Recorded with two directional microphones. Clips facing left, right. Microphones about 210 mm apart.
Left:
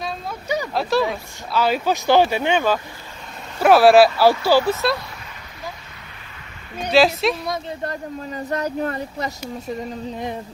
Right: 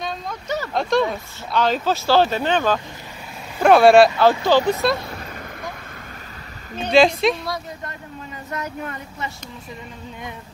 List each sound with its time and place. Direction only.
0.0 s speech: 10° left (ahead or behind)
6.9 s speech: centre (ahead or behind)
7.8 s speech: 35° left (ahead or behind)